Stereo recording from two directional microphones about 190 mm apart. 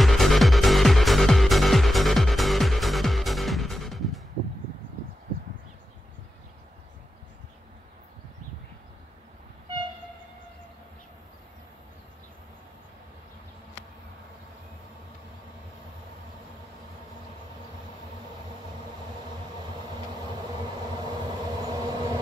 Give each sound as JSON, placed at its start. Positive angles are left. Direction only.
{"t": 0.0, "sound": "music", "side_deg": 0}
{"t": 19.6, "sound": "vehicle", "side_deg": -20}